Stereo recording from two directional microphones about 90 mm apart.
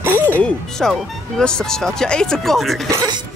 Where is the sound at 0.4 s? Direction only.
5° left (ahead or behind).